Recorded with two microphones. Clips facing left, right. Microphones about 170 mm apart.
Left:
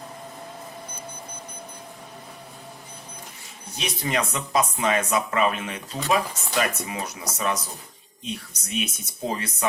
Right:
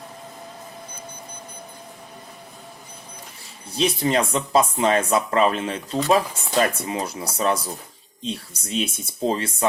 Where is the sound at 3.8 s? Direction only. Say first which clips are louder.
Right 6 dB; 30° right (ahead or behind).